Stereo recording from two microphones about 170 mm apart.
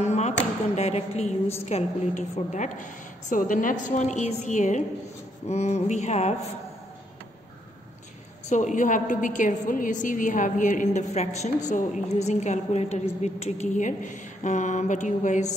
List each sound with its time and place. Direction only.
0.0 s a sound: 40° left (ahead or behind)
0.7 s a woman's voice: 40° left (ahead or behind)
5.5 s mantra: 40° left (ahead or behind)
8.5 s a woman's voice: 45° left (ahead or behind)